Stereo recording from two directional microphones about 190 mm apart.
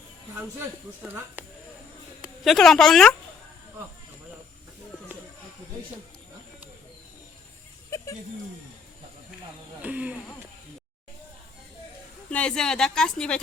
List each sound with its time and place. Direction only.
2.2 s a woman's voice: centre (ahead or behind)
7.9 s a sound: 15° left (ahead or behind)
9.8 s speech: 5° right (ahead or behind)
12.3 s a woman's voice: 5° left (ahead or behind)